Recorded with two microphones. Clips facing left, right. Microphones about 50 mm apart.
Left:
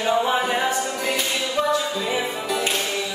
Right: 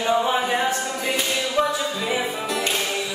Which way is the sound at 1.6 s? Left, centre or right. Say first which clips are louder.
Left 1 dB; centre.